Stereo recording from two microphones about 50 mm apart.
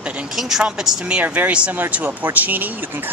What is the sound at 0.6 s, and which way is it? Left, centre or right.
Speech, right.